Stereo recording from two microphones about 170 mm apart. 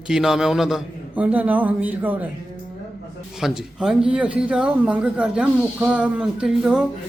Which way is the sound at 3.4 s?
5° right (ahead or behind).